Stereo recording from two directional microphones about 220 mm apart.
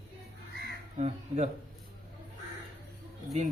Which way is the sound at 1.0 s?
30° right (ahead or behind).